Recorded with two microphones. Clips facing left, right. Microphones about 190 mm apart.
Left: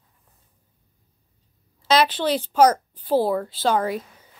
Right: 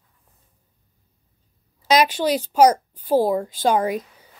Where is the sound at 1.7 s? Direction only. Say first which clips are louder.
Right 1 dB; 15° right (ahead or behind).